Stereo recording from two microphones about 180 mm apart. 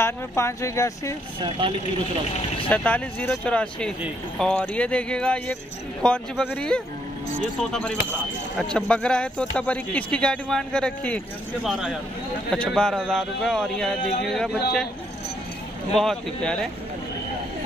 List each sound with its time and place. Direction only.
0.0 s speech: 15° left (ahead or behind)
2.7 s speech: 10° left (ahead or behind)
15.9 s speech: 5° left (ahead or behind)